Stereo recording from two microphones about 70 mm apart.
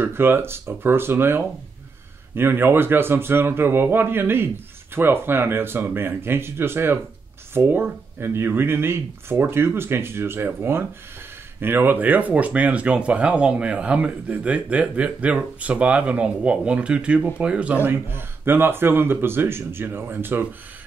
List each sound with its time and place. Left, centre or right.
0.0 s speech: right; by 17.7 s centre
17.8 s speech: right